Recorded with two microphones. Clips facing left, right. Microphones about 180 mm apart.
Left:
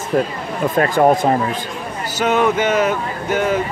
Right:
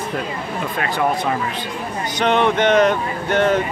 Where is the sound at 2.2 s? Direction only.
5° left (ahead or behind).